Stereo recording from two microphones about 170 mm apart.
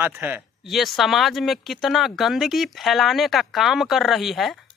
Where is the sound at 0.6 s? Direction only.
Centre (ahead or behind).